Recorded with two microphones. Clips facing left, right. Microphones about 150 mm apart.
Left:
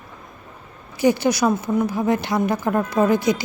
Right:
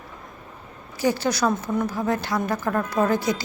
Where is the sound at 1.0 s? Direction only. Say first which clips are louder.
Left 5 dB; 15° left (ahead or behind).